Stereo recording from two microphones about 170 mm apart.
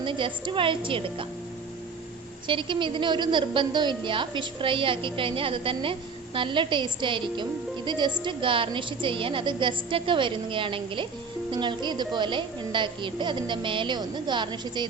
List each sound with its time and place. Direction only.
0.0 s a woman's voice: 30° right (ahead or behind)
2.5 s a woman's voice: 30° right (ahead or behind)